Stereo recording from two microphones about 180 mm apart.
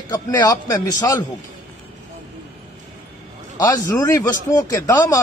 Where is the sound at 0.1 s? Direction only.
20° left (ahead or behind).